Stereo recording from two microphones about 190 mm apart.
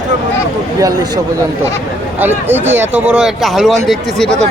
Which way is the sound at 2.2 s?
10° right (ahead or behind).